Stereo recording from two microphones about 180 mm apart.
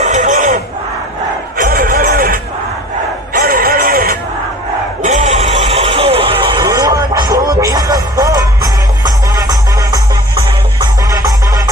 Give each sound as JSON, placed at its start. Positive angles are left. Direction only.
{"t": 0.0, "sound": "neigh", "side_deg": -40}
{"t": 1.6, "sound": "music", "side_deg": -50}
{"t": 5.0, "sound": "music", "side_deg": -40}
{"t": 10.8, "sound": "music", "side_deg": -20}